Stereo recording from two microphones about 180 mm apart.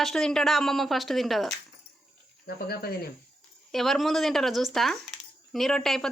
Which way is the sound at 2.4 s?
60° left (ahead or behind).